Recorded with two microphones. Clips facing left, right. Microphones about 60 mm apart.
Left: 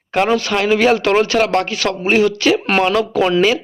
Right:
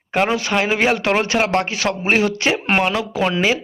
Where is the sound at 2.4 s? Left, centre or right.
Right.